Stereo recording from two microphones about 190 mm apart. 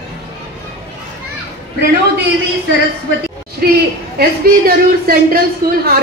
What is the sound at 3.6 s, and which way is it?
A woman's voice, 55° right (ahead or behind).